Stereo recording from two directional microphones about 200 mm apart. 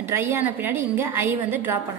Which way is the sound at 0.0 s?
10° right (ahead or behind).